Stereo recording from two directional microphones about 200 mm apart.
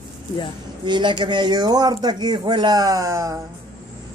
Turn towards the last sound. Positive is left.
turn(degrees=-15)  # may be behind; listen again after turning